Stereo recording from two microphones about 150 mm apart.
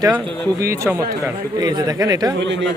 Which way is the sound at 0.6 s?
20° right (ahead or behind).